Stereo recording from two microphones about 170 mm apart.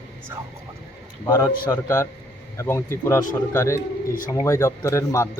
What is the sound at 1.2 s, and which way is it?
A man's voice, 20° left (ahead or behind).